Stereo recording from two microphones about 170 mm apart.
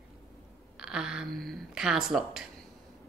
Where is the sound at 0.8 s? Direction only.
5° right (ahead or behind).